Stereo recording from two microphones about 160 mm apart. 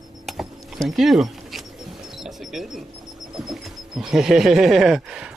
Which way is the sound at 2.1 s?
Centre (ahead or behind).